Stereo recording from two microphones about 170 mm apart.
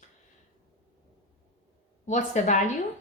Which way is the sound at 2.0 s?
45° left (ahead or behind).